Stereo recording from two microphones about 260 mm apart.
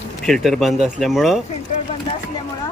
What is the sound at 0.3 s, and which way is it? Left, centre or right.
Speech, centre.